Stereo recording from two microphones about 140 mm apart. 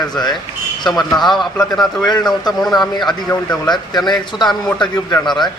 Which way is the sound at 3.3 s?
20° left (ahead or behind).